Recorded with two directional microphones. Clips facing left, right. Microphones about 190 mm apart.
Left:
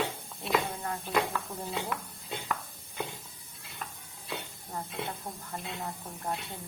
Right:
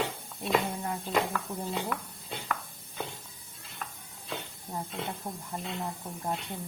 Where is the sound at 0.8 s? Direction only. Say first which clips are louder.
Right 2 dB; 15° right (ahead or behind).